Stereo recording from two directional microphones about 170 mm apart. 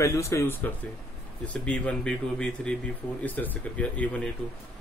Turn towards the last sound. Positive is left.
turn(degrees=10)  # may be behind; listen again after turning